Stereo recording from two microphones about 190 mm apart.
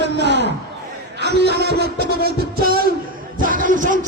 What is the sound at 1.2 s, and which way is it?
Music, 60° right (ahead or behind).